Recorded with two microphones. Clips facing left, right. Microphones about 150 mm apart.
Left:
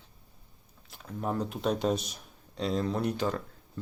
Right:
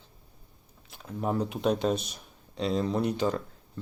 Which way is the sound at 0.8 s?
5° right (ahead or behind).